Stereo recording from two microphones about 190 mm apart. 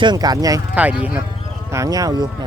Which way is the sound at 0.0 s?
20° right (ahead or behind).